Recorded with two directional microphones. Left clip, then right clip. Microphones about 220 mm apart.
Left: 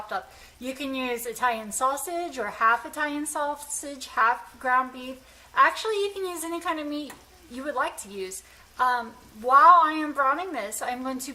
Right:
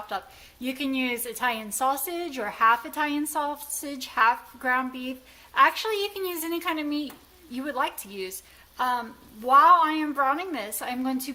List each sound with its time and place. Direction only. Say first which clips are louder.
0.6 s a woman's voice: right 2 dB; 30° right (ahead or behind)